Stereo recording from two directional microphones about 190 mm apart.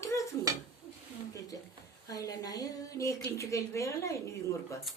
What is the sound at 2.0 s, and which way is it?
A woman's voice, 20° left (ahead or behind).